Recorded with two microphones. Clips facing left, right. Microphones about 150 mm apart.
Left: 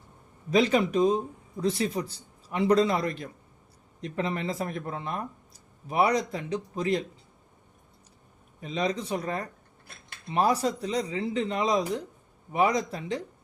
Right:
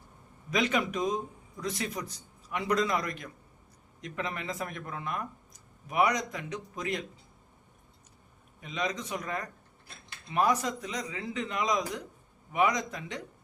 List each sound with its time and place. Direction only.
0.5 s speech: 30° left (ahead or behind)
8.6 s speech: 35° left (ahead or behind)